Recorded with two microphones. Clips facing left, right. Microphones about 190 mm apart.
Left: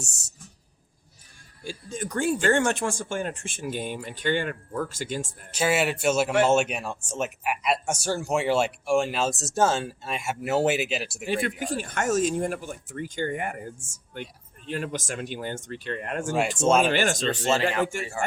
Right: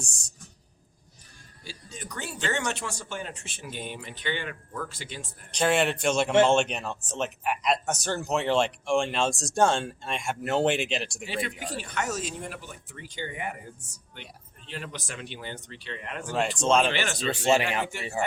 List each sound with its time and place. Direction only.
1.6 s speech: 50° left (ahead or behind)
5.5 s speech: 5° left (ahead or behind)
11.6 s speech: 50° left (ahead or behind)
16.6 s speech: 5° left (ahead or behind)
16.9 s speech: 45° left (ahead or behind)
17.2 s speech: 15° right (ahead or behind)
17.8 s speech: 45° left (ahead or behind)